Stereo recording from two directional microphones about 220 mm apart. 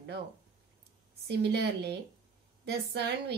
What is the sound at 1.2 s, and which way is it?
Speech, 50° right (ahead or behind).